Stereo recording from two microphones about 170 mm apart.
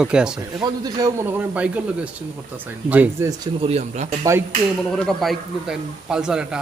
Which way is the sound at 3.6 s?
35° right (ahead or behind).